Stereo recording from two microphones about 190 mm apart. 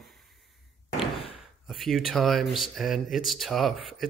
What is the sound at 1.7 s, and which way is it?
Speech, centre (ahead or behind).